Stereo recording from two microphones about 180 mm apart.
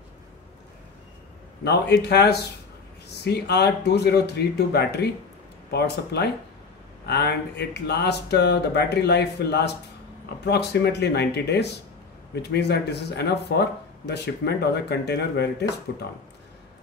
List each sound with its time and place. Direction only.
1.6 s speech: 65° left (ahead or behind)